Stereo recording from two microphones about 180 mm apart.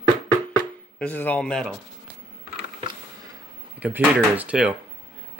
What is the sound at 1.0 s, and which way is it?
Speech, 10° left (ahead or behind).